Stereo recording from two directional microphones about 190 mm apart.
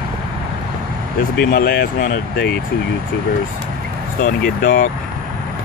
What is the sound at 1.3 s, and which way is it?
Speech, 55° left (ahead or behind).